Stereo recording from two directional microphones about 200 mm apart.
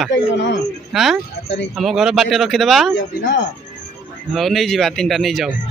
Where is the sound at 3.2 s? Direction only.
60° left (ahead or behind).